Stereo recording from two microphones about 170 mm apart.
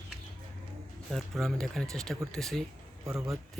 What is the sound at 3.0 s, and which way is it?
Speech, 15° right (ahead or behind).